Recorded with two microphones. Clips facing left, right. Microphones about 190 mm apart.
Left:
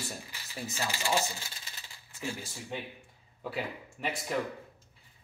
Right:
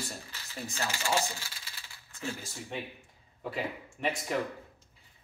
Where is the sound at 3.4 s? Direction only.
Centre (ahead or behind).